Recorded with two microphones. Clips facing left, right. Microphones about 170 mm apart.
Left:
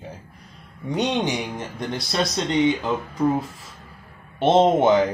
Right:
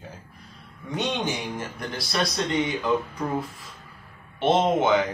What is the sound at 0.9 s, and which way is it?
Speech, 15° left (ahead or behind).